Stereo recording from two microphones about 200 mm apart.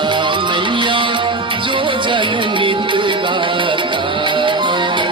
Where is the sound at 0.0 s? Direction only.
25° right (ahead or behind).